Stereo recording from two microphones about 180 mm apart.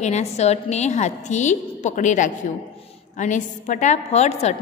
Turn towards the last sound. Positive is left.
turn(degrees=40)  # may be behind; listen again after turning